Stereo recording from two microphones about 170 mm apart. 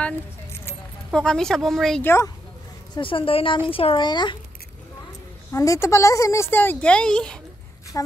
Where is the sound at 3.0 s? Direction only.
30° left (ahead or behind).